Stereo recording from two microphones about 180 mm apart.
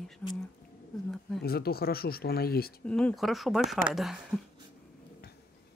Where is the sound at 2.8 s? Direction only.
5° left (ahead or behind).